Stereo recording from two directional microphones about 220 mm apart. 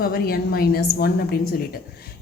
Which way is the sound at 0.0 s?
45° left (ahead or behind).